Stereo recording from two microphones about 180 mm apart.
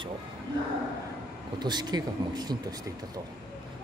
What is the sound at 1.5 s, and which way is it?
Speech, 25° right (ahead or behind).